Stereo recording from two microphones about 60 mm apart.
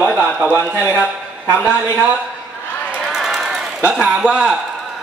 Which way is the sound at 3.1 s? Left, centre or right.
Centre.